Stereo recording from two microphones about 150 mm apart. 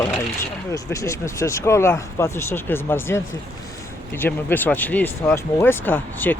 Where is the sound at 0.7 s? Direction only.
20° left (ahead or behind).